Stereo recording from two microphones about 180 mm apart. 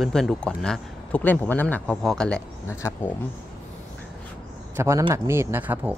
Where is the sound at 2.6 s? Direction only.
15° left (ahead or behind).